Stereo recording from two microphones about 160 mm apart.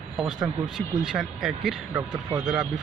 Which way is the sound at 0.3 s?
25° right (ahead or behind).